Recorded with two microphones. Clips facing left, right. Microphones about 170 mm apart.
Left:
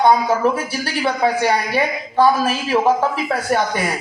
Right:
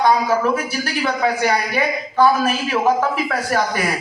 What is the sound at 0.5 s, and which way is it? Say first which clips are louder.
A man's voice: right 1 dB; 30° left (ahead or behind).